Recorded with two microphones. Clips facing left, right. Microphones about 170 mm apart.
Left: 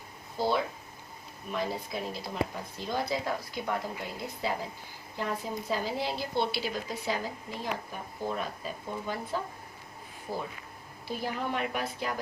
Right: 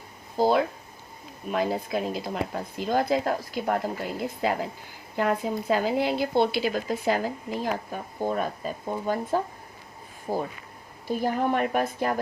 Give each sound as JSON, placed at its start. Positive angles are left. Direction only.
{"t": 1.5, "sound": "speech", "side_deg": -85}